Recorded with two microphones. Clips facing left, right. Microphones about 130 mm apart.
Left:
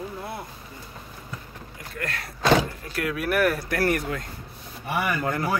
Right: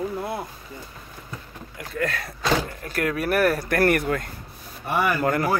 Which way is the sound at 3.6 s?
55° right (ahead or behind).